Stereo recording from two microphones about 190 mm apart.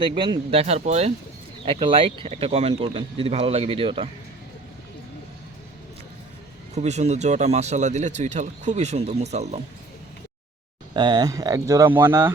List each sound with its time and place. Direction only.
0.0 s speech: 25° right (ahead or behind)
6.7 s speech: 35° right (ahead or behind)
10.9 s speech: 25° right (ahead or behind)